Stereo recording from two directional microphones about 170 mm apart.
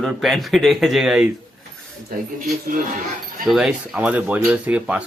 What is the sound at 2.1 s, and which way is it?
Speech, 60° right (ahead or behind).